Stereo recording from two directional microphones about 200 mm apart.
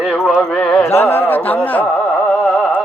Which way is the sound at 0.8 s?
10° left (ahead or behind).